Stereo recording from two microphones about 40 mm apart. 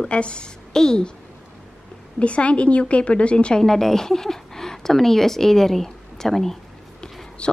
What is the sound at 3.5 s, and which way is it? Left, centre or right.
Speech, centre.